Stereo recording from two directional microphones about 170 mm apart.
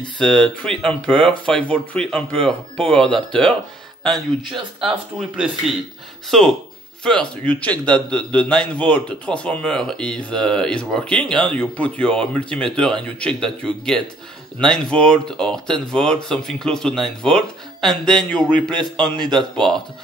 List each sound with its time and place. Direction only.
0.2 s a man's voice: 5° left (ahead or behind)
4.5 s speech: 30° right (ahead or behind)
6.3 s a man's voice: centre (ahead or behind)